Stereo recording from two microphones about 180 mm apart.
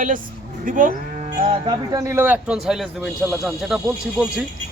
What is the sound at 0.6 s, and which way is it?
Livestock, 50° right (ahead or behind).